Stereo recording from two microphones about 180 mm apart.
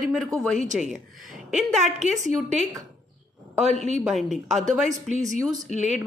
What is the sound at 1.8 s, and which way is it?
Speech, 40° right (ahead or behind).